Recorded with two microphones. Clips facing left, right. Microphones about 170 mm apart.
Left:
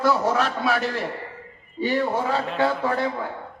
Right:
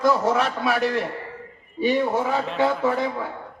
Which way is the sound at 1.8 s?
15° right (ahead or behind).